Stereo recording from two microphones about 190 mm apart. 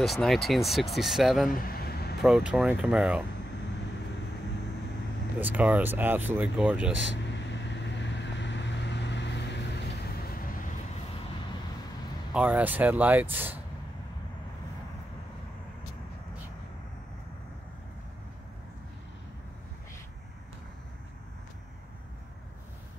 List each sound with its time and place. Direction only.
0.0 s speech: centre (ahead or behind)
1.5 s vehicle: 50° left (ahead or behind)
2.2 s speech: 5° right (ahead or behind)
5.4 s speech: 10° right (ahead or behind)
7.3 s vehicle: 70° left (ahead or behind)
12.4 s speech: 10° right (ahead or behind)